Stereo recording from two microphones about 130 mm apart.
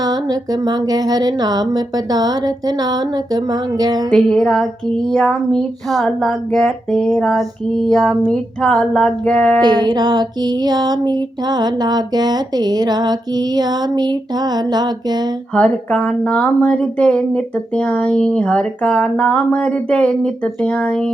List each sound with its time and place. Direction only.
0.0 s speech: 30° right (ahead or behind)
4.1 s a sound: 5° left (ahead or behind)
9.6 s music: 30° right (ahead or behind)
15.5 s speech: 10° left (ahead or behind)